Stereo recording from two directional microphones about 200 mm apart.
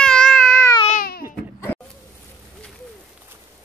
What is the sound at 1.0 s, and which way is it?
Baby cry, 50° left (ahead or behind).